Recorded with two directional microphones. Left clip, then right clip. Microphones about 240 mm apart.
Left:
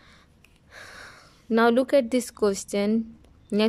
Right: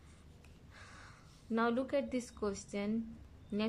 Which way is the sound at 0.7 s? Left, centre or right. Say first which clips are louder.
Left 13 dB; left.